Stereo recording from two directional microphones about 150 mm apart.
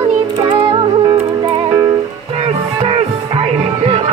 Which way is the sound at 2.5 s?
40° right (ahead or behind).